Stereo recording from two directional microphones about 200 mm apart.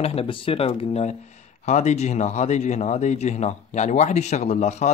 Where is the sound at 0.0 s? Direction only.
30° left (ahead or behind).